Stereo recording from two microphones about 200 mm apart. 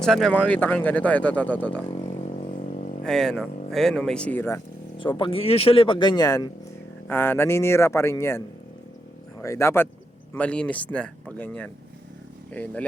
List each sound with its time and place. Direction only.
0.0 s speech: 5° left (ahead or behind)
1.9 s a sound: 30° left (ahead or behind)
3.0 s speech: centre (ahead or behind)
4.9 s speech: 25° left (ahead or behind)
9.4 s speech: 15° left (ahead or behind)